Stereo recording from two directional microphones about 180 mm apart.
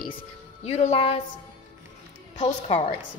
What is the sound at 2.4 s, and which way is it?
Speech, 35° left (ahead or behind).